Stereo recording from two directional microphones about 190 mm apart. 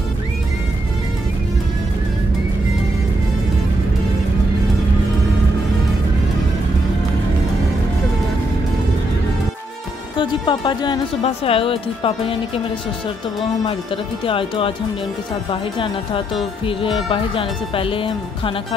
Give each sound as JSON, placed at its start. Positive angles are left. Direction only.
{"t": 10.1, "sound": "speech", "side_deg": 25}
{"t": 14.2, "sound": "speech", "side_deg": 30}
{"t": 16.6, "sound": "speech", "side_deg": 30}